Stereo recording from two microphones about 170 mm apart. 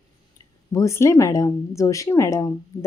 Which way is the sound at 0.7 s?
15° left (ahead or behind).